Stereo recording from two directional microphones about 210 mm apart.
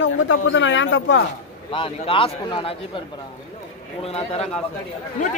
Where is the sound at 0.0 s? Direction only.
60° left (ahead or behind).